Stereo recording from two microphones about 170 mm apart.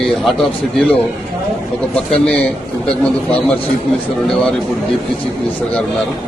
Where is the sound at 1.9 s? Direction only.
5° left (ahead or behind).